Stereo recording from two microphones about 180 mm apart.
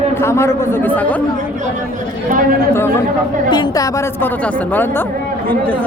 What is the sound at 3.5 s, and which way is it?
A man's voice, 20° left (ahead or behind).